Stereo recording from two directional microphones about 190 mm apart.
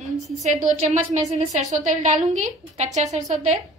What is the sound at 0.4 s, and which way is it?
A woman's voice, 40° right (ahead or behind).